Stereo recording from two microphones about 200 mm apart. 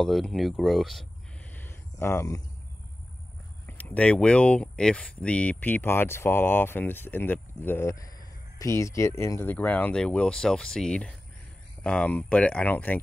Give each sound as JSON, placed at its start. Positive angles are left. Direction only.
{"t": 0.0, "sound": "speech", "side_deg": 0}
{"t": 1.5, "sound": "a sound", "side_deg": 10}
{"t": 3.6, "sound": "speech", "side_deg": 10}